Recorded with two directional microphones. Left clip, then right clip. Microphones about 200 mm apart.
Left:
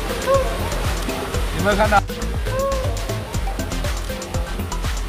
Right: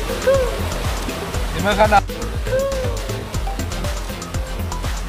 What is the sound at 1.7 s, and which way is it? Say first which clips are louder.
Speech: right 2 dB; 15° right (ahead or behind).